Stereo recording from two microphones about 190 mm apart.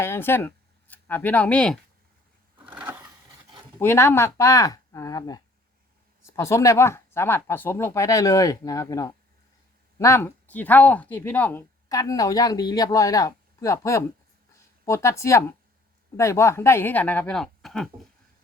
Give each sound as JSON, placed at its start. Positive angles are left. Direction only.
{"t": 0.0, "sound": "speech", "side_deg": 10}
{"t": 2.6, "sound": "sewing machine", "side_deg": -10}
{"t": 3.8, "sound": "speech", "side_deg": 10}